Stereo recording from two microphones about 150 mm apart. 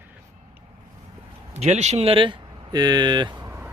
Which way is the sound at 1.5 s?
50° right (ahead or behind).